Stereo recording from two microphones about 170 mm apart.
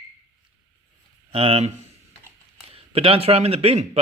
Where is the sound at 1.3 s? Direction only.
35° right (ahead or behind).